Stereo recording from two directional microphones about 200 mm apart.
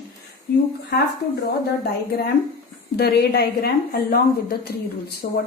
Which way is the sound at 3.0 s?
55° left (ahead or behind).